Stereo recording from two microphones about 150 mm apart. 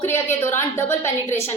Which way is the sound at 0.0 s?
15° left (ahead or behind).